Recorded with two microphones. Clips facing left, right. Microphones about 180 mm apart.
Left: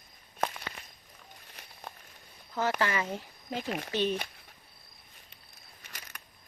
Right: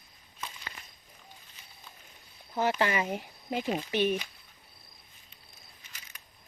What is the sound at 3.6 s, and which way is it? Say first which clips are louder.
Speech: right 3 dB; 60° left (ahead or behind).